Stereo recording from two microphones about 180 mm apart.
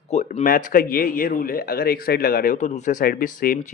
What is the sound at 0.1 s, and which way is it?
Speech, 40° left (ahead or behind).